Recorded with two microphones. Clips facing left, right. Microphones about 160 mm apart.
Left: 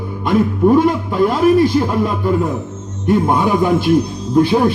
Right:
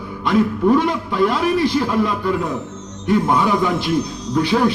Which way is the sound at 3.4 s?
45° left (ahead or behind).